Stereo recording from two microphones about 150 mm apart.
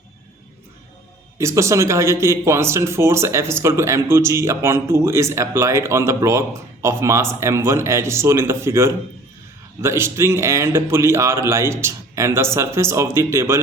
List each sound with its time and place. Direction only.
1.4 s speech: 20° right (ahead or behind)